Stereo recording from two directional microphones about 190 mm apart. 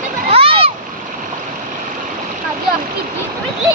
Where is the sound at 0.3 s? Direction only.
30° right (ahead or behind).